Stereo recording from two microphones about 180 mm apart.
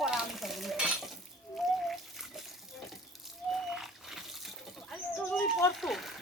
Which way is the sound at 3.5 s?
Centre (ahead or behind).